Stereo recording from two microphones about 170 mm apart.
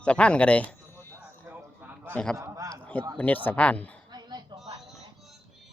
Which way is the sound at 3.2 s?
10° left (ahead or behind).